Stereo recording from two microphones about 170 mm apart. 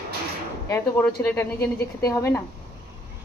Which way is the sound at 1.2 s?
15° left (ahead or behind).